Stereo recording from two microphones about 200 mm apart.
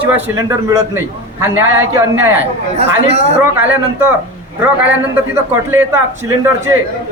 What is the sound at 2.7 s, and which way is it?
Speech, 30° right (ahead or behind).